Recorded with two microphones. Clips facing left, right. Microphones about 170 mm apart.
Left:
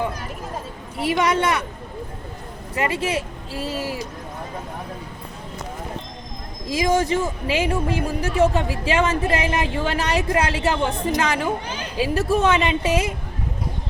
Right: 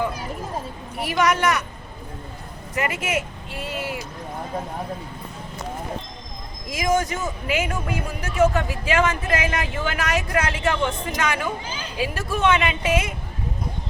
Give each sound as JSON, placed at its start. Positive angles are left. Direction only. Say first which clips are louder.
{"t": 1.0, "sound": "a woman's voice", "louder": "left 1 dB", "side_deg": 25}
{"t": 2.7, "sound": "speech", "louder": "left 2 dB", "side_deg": 30}
{"t": 6.7, "sound": "speech", "louder": "left 3 dB", "side_deg": 30}
{"t": 11.6, "sound": "a child's voice", "louder": "left 3 dB", "side_deg": 65}
{"t": 11.9, "sound": "speech", "louder": "left 6 dB", "side_deg": 35}